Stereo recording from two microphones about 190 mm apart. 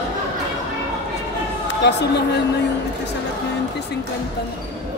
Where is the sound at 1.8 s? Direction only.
60° left (ahead or behind).